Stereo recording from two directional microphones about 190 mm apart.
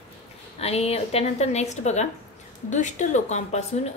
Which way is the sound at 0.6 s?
35° left (ahead or behind).